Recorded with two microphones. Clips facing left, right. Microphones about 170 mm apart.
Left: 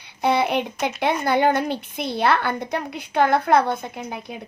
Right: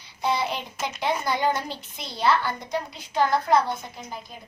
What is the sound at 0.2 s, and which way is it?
Speech, 60° left (ahead or behind).